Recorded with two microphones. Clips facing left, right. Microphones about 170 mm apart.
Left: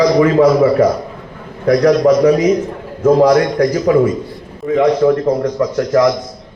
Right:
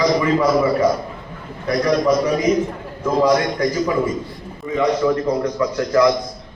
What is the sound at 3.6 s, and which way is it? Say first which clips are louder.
Speech: left 7 dB; 70° left (ahead or behind).